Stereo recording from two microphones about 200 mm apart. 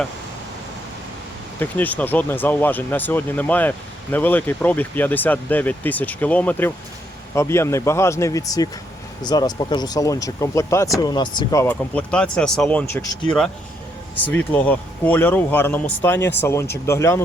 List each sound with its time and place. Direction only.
1.5 s speech: 10° left (ahead or behind)
14.3 s speech: 10° left (ahead or behind)